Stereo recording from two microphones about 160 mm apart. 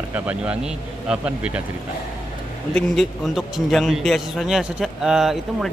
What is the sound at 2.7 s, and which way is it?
A man's voice, 5° left (ahead or behind).